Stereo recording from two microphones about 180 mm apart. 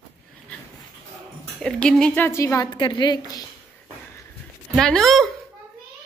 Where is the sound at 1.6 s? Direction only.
5° left (ahead or behind); by 3.4 s 20° left (ahead or behind).